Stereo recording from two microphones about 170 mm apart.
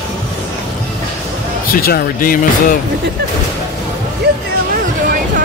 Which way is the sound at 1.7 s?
60° left (ahead or behind).